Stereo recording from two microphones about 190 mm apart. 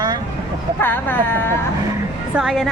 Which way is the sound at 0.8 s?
10° left (ahead or behind).